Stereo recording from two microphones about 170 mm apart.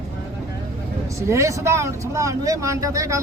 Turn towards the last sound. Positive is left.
turn(degrees=-20)  # may be behind; listen again after turning